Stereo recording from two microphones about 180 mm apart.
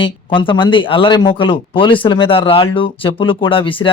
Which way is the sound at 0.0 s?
30° left (ahead or behind).